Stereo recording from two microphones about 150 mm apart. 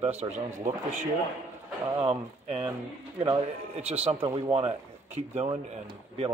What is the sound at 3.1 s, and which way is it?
A man's voice, 35° right (ahead or behind).